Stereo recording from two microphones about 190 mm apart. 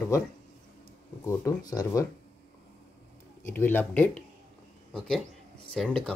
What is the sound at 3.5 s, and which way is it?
Speech, 10° left (ahead or behind).